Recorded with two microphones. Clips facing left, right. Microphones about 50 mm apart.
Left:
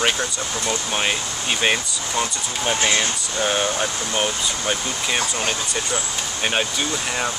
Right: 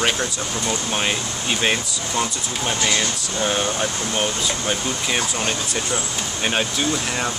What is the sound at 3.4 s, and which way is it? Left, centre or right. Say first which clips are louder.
Speech: even; centre.